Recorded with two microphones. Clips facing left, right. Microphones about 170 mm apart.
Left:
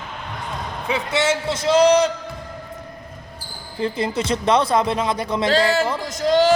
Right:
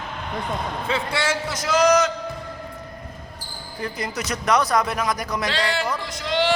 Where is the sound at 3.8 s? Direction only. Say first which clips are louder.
Left 7 dB; 25° left (ahead or behind).